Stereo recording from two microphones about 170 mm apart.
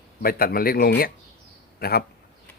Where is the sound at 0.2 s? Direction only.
60° left (ahead or behind).